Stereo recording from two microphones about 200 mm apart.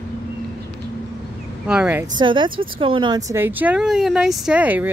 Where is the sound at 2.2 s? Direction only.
25° right (ahead or behind).